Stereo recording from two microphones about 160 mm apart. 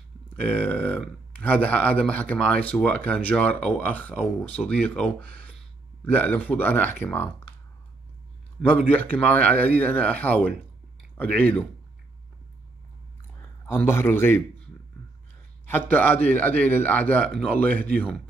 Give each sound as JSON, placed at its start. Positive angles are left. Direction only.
{"t": 0.3, "sound": "speech", "side_deg": 10}
{"t": 8.6, "sound": "speech", "side_deg": 10}
{"t": 13.4, "sound": "a man's voice", "side_deg": 15}
{"t": 15.6, "sound": "a man's voice", "side_deg": 10}